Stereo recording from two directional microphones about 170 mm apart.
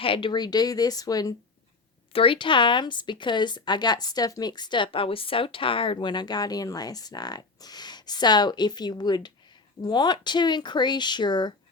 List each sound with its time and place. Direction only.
0.0 s speech: 30° left (ahead or behind)